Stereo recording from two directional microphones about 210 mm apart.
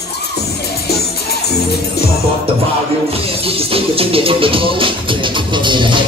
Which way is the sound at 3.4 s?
25° right (ahead or behind).